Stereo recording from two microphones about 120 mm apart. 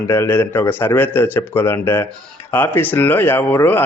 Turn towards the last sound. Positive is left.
turn(degrees=15)  # may be behind; listen again after turning